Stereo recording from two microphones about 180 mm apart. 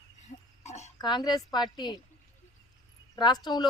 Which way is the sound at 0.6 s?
40° left (ahead or behind).